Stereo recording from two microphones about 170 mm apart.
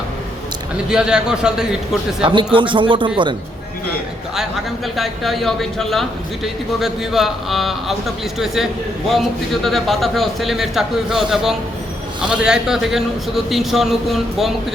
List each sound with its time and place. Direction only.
0.9 s a man's voice: 5° right (ahead or behind)
2.2 s speech: 30° right (ahead or behind)
4.4 s a man's voice: centre (ahead or behind)